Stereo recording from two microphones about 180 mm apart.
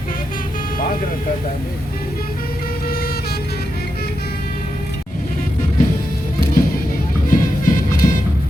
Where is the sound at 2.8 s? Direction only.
55° left (ahead or behind).